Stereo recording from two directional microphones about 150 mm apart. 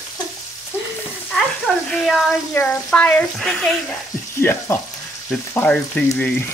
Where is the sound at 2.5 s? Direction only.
10° left (ahead or behind).